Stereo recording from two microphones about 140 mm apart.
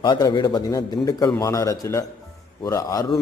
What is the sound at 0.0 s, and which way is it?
A man's voice, 30° left (ahead or behind).